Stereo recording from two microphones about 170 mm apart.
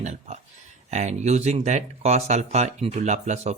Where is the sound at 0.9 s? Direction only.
40° right (ahead or behind).